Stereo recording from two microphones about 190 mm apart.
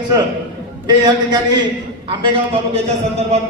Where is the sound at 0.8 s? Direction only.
20° right (ahead or behind).